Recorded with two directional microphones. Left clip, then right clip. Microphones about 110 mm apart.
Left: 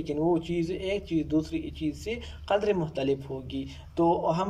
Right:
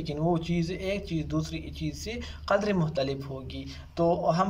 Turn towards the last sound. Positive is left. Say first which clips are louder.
# even
turn(degrees=30)  # may be behind; listen again after turning